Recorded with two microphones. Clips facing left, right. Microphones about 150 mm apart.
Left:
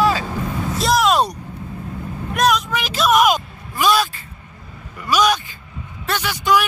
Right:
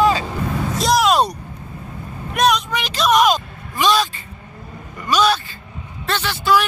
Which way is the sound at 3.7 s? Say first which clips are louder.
Even; 10° left (ahead or behind).